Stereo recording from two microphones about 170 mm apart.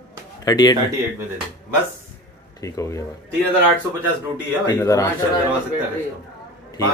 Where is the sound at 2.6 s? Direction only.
20° left (ahead or behind).